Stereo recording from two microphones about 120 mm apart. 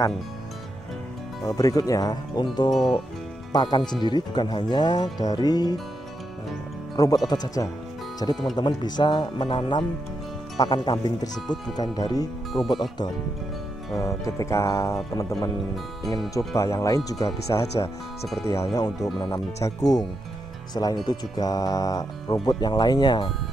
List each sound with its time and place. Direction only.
1.4 s speech: 30° left (ahead or behind)
7.0 s speech: 30° left (ahead or behind)
13.9 s speech: 25° left (ahead or behind)
16.3 s speech: 25° left (ahead or behind)
19.1 s speech: 40° left (ahead or behind)